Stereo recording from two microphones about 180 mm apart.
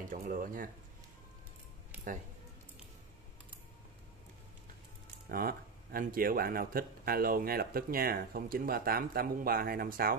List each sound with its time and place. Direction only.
0.1 s speech: 50° right (ahead or behind)
5.3 s a man's voice: 55° right (ahead or behind)